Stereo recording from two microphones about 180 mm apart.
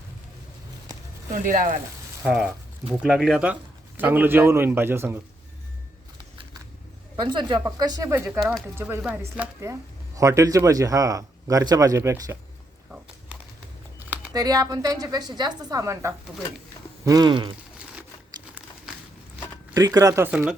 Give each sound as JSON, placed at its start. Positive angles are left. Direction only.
{"t": 1.3, "sound": "speech", "side_deg": -50}
{"t": 2.2, "sound": "speech", "side_deg": -5}
{"t": 7.2, "sound": "a man's voice", "side_deg": -25}
{"t": 8.4, "sound": "speech", "side_deg": 0}
{"t": 8.7, "sound": "a man's voice", "side_deg": -10}
{"t": 14.3, "sound": "a man's voice", "side_deg": -20}
{"t": 19.7, "sound": "speech", "side_deg": -20}